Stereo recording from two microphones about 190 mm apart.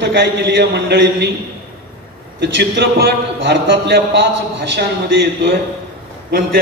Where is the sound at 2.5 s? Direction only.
65° right (ahead or behind).